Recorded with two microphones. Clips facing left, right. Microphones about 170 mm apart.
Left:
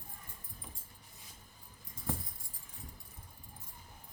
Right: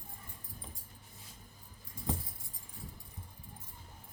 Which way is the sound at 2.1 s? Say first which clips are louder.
Right 2 dB; 20° right (ahead or behind).